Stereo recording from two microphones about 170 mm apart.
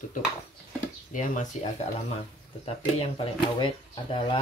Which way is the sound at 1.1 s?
45° left (ahead or behind).